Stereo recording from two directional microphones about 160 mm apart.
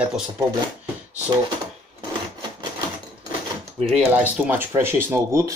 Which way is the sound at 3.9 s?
10° right (ahead or behind).